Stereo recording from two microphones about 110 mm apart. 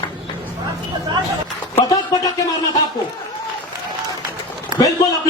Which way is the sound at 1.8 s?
35° left (ahead or behind).